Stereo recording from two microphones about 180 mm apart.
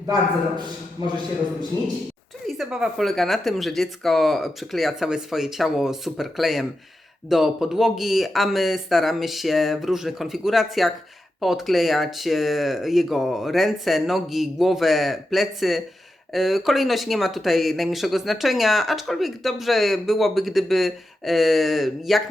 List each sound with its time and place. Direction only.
1.0 s a man's voice: 20° right (ahead or behind)
2.5 s speech: centre (ahead or behind)